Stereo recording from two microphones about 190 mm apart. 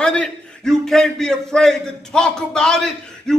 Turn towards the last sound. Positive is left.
turn(degrees=5)  # may be behind; listen again after turning